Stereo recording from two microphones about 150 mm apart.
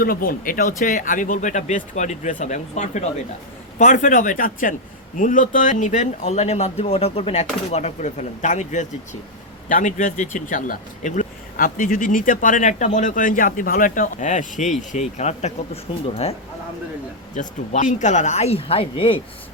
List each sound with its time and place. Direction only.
0.0 s speech: 75° left (ahead or behind); by 16.3 s 40° left (ahead or behind)
17.3 s speech: 55° left (ahead or behind); by 19.2 s 35° left (ahead or behind)